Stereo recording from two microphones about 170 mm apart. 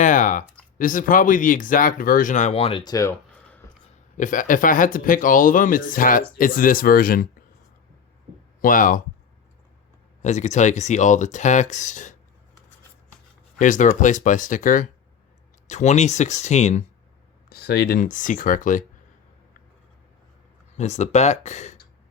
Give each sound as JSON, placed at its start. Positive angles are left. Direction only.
{"t": 0.0, "sound": "a sound", "side_deg": 50}
{"t": 0.8, "sound": "speech", "side_deg": 55}
{"t": 2.8, "sound": "a sound", "side_deg": 20}
{"t": 4.2, "sound": "speech", "side_deg": 50}
{"t": 8.6, "sound": "speech", "side_deg": 55}
{"t": 10.2, "sound": "speech", "side_deg": 45}
{"t": 13.6, "sound": "speech", "side_deg": 50}
{"t": 17.5, "sound": "speech", "side_deg": 70}
{"t": 20.7, "sound": "speech", "side_deg": 40}